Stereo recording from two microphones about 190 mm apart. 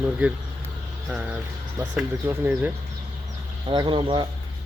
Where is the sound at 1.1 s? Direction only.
10° right (ahead or behind).